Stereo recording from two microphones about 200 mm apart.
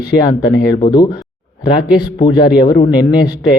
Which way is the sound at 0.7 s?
20° left (ahead or behind).